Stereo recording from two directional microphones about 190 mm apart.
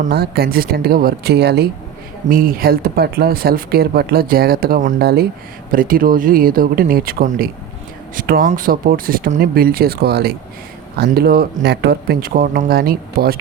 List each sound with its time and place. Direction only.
0.1 s speech: 55° right (ahead or behind)
2.3 s speech: 50° right (ahead or behind)
4.9 s speech: 55° right (ahead or behind)